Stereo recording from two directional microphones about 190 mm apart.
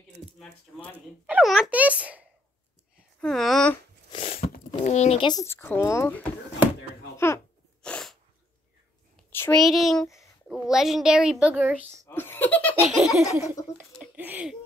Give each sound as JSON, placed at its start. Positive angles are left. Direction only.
{"t": 0.4, "sound": "speech", "side_deg": 5}
{"t": 0.9, "sound": "a sound", "side_deg": -10}
{"t": 4.1, "sound": "crunch", "side_deg": 30}
{"t": 4.8, "sound": "speech", "side_deg": 35}
{"t": 7.8, "sound": "sneeze", "side_deg": 5}
{"t": 9.3, "sound": "a sound", "side_deg": 10}
{"t": 9.6, "sound": "a child's voice", "side_deg": 0}
{"t": 12.1, "sound": "giggle", "side_deg": 10}
{"t": 12.8, "sound": "a child's voice", "side_deg": 0}
{"t": 13.9, "sound": "a sound", "side_deg": -10}